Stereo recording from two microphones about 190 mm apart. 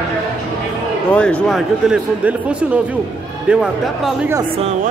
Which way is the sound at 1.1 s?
5° left (ahead or behind).